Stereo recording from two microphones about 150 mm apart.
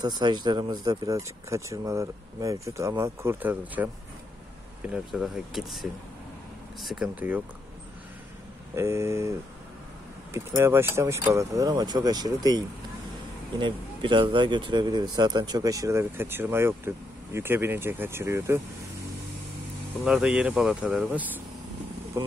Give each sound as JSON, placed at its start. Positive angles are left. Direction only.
{"t": 0.0, "sound": "speech", "side_deg": -30}
{"t": 8.7, "sound": "speech", "side_deg": -20}
{"t": 10.3, "sound": "speech", "side_deg": -15}
{"t": 20.1, "sound": "speech", "side_deg": -5}
{"t": 22.2, "sound": "speech", "side_deg": -25}